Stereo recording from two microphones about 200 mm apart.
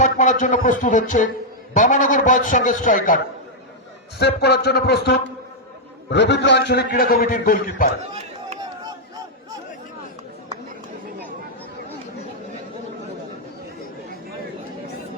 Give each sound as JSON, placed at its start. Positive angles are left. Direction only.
{"t": 0.0, "sound": "a man's voice", "side_deg": 40}
{"t": 4.2, "sound": "a man's voice", "side_deg": 55}
{"t": 8.1, "sound": "a sound", "side_deg": -30}